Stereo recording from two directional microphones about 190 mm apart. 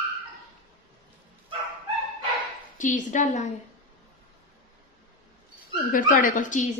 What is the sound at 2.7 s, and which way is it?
Speech, 40° left (ahead or behind).